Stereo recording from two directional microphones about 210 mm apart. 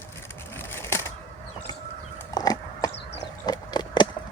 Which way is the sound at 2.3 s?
15° left (ahead or behind).